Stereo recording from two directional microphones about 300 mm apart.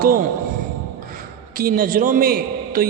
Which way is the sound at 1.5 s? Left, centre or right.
Right.